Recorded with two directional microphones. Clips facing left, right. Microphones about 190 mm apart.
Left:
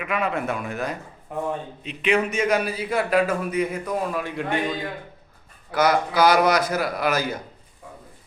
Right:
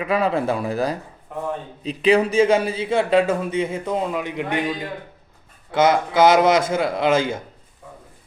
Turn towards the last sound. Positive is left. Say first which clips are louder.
# right 5 dB
turn(degrees=-25)  # may be behind; listen again after turning